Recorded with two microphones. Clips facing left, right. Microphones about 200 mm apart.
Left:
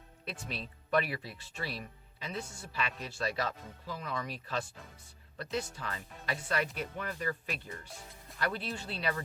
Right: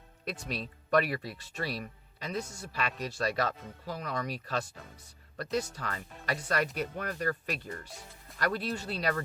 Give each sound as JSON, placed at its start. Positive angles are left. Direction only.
{"t": 0.3, "sound": "speech", "side_deg": -40}